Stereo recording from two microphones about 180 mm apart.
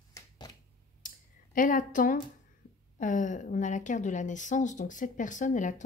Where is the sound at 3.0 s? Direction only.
45° left (ahead or behind).